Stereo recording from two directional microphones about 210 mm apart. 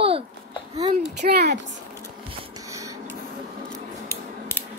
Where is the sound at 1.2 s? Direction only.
50° right (ahead or behind).